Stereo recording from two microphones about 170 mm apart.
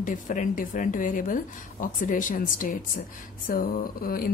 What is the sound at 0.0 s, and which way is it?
A woman's voice, 50° left (ahead or behind).